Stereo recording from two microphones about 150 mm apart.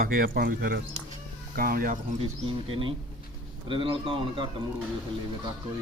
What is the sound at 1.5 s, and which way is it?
Speech, 75° right (ahead or behind).